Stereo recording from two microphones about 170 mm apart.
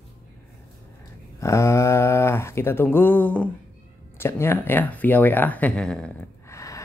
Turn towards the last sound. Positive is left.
turn(degrees=20)  # may be behind; listen again after turning